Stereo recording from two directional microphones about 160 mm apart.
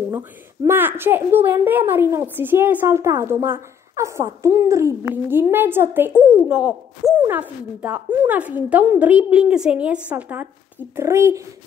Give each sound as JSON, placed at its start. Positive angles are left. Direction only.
{"t": 0.1, "sound": "a woman's voice", "side_deg": -15}